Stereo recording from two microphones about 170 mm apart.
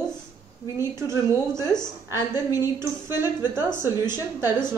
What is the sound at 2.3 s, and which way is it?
Speech, 20° left (ahead or behind).